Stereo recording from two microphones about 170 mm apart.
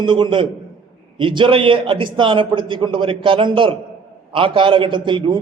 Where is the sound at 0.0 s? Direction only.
30° right (ahead or behind).